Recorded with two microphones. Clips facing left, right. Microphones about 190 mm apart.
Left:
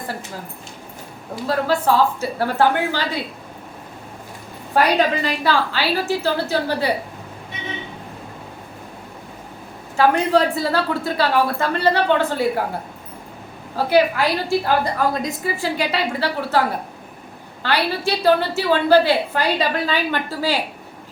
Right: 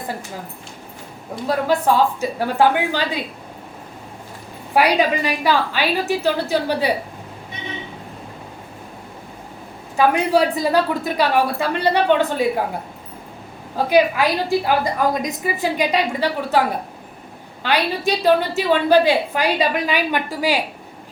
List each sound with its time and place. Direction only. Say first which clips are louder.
1.5 s a woman's voice: right 1 dB; 15° right (ahead or behind)
4.7 s a woman's voice: right 1 dB; 10° right (ahead or behind)
10.0 s a woman's voice: even; 15° right (ahead or behind)
13.7 s a woman's voice: right 1 dB; 15° right (ahead or behind)
17.6 s a woman's voice: right 1 dB; 15° right (ahead or behind)